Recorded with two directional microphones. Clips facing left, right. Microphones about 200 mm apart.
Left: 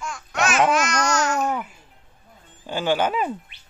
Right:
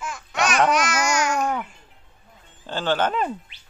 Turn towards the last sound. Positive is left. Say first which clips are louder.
# left 1 dB
turn(degrees=10)  # may be behind; listen again after turning